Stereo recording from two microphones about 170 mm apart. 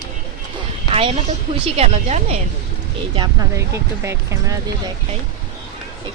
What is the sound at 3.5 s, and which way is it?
A woman's voice, 15° right (ahead or behind).